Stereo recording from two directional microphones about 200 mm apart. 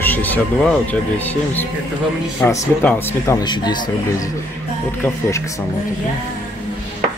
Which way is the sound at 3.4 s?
20° left (ahead or behind).